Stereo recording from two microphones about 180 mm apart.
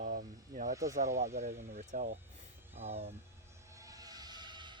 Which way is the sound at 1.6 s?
45° right (ahead or behind).